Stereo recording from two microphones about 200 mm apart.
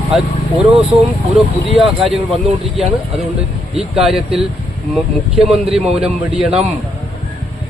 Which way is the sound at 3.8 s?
Centre (ahead or behind).